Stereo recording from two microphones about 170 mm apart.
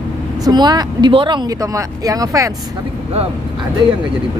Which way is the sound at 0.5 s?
25° right (ahead or behind).